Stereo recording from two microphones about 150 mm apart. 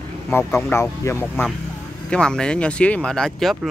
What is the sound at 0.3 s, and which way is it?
Speech, 15° left (ahead or behind).